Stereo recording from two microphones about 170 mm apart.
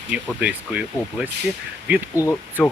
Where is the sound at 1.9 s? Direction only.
10° right (ahead or behind).